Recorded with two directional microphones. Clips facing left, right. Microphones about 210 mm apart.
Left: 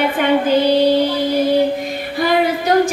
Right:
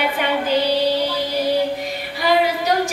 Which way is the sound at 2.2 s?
50° left (ahead or behind).